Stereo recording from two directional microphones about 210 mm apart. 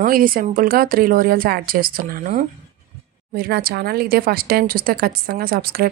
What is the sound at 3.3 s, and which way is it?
Speech, 45° right (ahead or behind).